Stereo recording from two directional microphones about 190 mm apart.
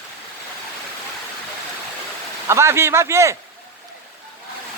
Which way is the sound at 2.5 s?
15° right (ahead or behind).